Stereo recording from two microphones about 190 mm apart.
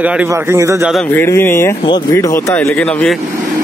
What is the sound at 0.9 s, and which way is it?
Speech, 10° left (ahead or behind).